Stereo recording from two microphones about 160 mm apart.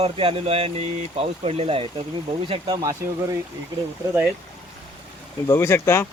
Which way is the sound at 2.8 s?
20° right (ahead or behind).